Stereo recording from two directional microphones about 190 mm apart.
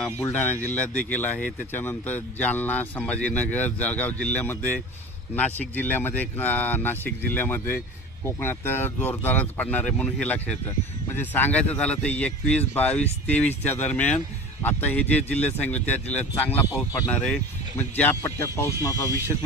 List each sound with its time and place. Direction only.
0.0 s a man's voice: 5° left (ahead or behind)